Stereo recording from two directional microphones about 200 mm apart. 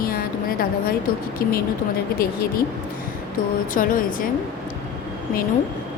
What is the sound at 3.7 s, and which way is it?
Speech, 45° left (ahead or behind).